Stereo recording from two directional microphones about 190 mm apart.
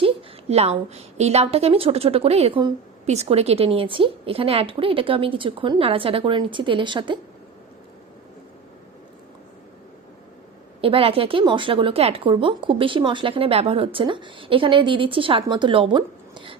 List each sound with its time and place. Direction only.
0.0 s a woman's voice: 35° right (ahead or behind)
10.8 s speech: 30° right (ahead or behind)